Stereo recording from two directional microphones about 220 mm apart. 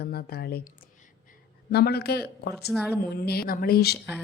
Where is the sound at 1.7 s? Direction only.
45° left (ahead or behind).